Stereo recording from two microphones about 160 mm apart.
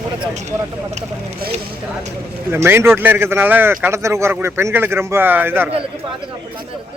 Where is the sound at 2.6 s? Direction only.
15° right (ahead or behind).